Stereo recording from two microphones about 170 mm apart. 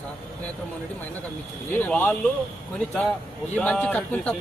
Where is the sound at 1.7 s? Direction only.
10° left (ahead or behind).